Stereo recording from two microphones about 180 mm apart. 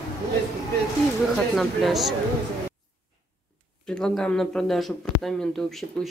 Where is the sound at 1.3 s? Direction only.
Centre (ahead or behind).